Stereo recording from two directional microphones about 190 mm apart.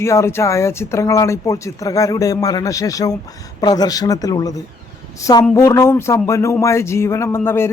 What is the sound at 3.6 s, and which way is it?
Speech, 20° left (ahead or behind).